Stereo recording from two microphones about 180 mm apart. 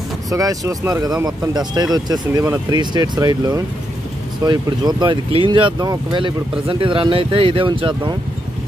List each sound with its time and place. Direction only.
0.3 s speech: 20° right (ahead or behind)